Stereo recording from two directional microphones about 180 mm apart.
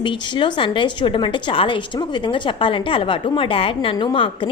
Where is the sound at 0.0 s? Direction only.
25° left (ahead or behind).